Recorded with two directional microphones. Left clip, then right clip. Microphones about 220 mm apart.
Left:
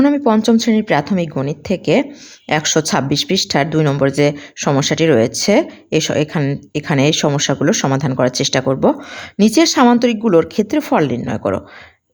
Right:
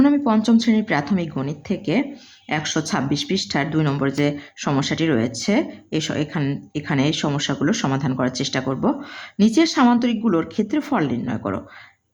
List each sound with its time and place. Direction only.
0.0 s speech: 30° left (ahead or behind)